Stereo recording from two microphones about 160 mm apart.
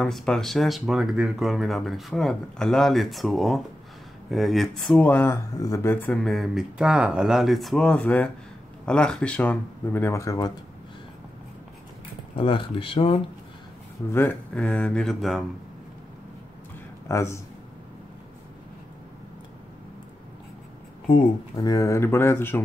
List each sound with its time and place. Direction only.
0.0 s speech: 5° left (ahead or behind)
6.2 s speech: centre (ahead or behind); by 10.5 s 20° left (ahead or behind)
12.4 s speech: 35° left (ahead or behind)
14.1 s speech: 10° left (ahead or behind)
17.1 s speech: 15° left (ahead or behind)
21.1 s speech: 25° left (ahead or behind)